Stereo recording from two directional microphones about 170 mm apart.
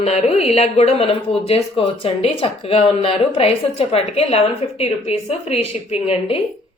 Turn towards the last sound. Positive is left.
turn(degrees=35)  # may be behind; listen again after turning